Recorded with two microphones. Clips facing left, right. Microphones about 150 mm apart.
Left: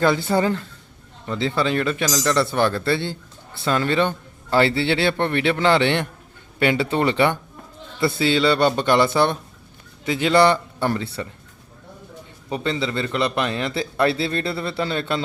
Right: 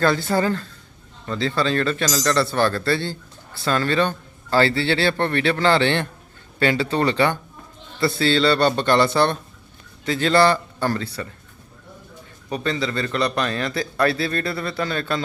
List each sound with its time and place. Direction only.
0.0 s a man's voice: 15° left (ahead or behind)
12.5 s speech: 20° left (ahead or behind)